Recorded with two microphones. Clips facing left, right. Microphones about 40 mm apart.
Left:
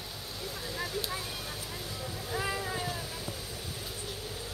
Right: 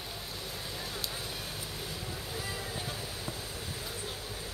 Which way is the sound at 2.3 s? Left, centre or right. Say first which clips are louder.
Left 8 dB; left.